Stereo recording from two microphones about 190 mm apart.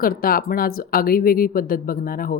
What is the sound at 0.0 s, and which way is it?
Speech, 50° left (ahead or behind).